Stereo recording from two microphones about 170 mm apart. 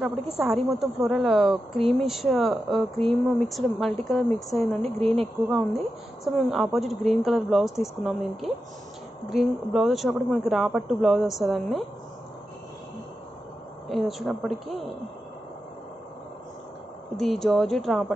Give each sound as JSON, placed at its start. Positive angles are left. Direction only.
{"t": 0.4, "sound": "speech", "side_deg": 0}
{"t": 5.0, "sound": "speech", "side_deg": -35}
{"t": 6.2, "sound": "speech", "side_deg": 0}
{"t": 13.8, "sound": "speech", "side_deg": 0}
{"t": 17.2, "sound": "speech", "side_deg": 0}